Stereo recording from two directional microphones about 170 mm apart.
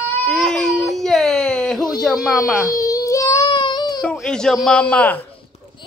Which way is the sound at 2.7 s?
20° left (ahead or behind).